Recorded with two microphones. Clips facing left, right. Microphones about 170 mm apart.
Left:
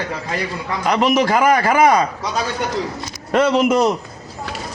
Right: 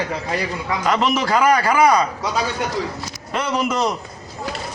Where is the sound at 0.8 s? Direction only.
15° left (ahead or behind).